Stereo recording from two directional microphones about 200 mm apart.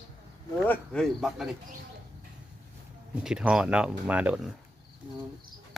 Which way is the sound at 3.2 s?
5° right (ahead or behind).